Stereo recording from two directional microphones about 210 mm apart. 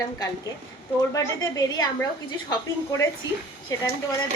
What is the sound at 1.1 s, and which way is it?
A woman's voice, 15° left (ahead or behind).